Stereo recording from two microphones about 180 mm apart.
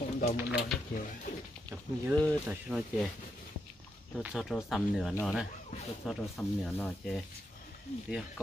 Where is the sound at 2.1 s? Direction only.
5° left (ahead or behind).